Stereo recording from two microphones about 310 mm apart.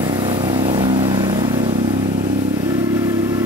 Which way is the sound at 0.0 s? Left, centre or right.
Centre.